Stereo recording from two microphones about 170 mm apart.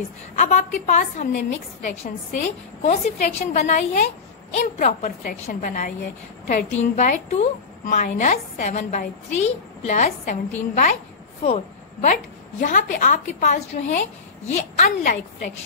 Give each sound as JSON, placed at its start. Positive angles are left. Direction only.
{"t": 0.4, "sound": "a woman's voice", "side_deg": 45}